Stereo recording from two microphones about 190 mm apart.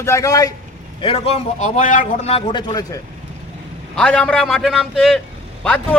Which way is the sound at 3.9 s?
5° left (ahead or behind).